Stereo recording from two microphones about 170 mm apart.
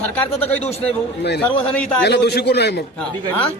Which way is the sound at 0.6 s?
35° left (ahead or behind).